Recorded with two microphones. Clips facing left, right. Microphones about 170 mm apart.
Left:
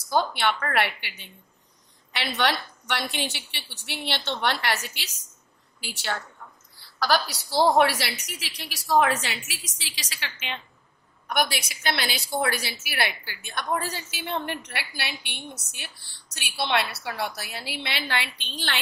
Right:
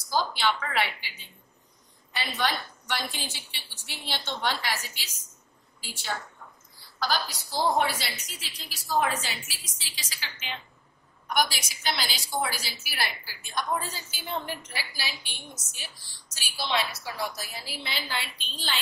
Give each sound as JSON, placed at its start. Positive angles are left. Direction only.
{"t": 0.1, "sound": "a woman's voice", "side_deg": 60}